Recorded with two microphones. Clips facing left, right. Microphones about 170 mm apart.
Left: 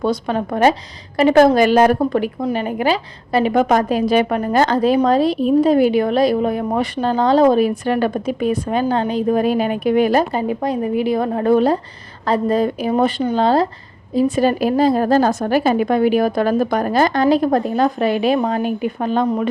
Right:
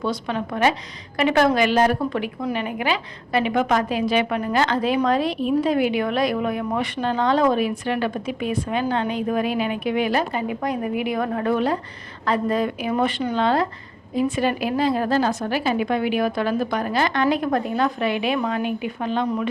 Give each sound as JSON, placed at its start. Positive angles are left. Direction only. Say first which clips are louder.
{"t": 0.0, "sound": "a woman's voice", "louder": "left 6 dB", "side_deg": 40}